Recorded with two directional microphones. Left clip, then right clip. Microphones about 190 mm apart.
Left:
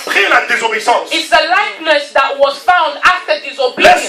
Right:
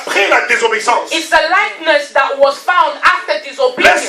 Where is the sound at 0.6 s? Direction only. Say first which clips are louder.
Even; 50° left (ahead or behind).